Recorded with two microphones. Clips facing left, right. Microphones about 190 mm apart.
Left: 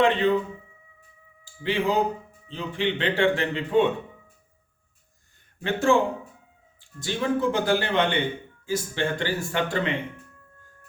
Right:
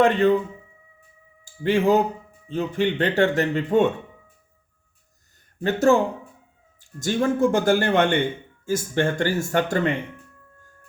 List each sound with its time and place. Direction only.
0.0 s speech: 45° right (ahead or behind)
1.6 s speech: 45° right (ahead or behind)
5.5 s speech: 40° right (ahead or behind)
7.0 s speech: 45° right (ahead or behind)